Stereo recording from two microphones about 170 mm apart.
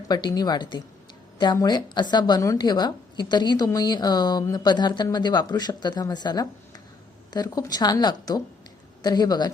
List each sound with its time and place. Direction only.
0.1 s a woman's voice: 25° left (ahead or behind)